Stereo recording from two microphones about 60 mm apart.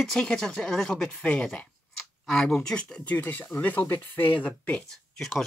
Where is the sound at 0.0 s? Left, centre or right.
Centre.